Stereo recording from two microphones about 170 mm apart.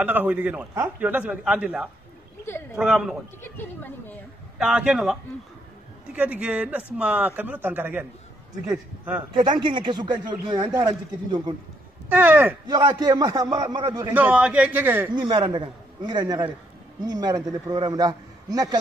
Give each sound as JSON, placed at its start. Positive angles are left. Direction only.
{"t": 0.0, "sound": "a man's voice", "side_deg": -10}
{"t": 3.4, "sound": "speech", "side_deg": 10}
{"t": 4.6, "sound": "a man's voice", "side_deg": -5}
{"t": 6.1, "sound": "speech", "side_deg": -10}
{"t": 9.3, "sound": "a man's voice", "side_deg": -25}
{"t": 12.1, "sound": "speech", "side_deg": -10}
{"t": 12.6, "sound": "a man's voice", "side_deg": -25}
{"t": 14.1, "sound": "speech", "side_deg": -10}
{"t": 15.1, "sound": "a man's voice", "side_deg": -25}